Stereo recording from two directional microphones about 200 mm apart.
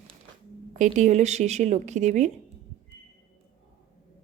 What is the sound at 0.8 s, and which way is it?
A woman's voice, 35° right (ahead or behind).